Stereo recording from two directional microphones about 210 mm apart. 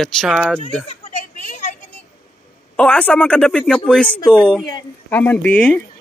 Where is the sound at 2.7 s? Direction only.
5° left (ahead or behind).